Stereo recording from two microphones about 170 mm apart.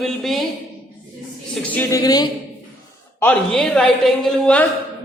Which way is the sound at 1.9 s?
20° left (ahead or behind).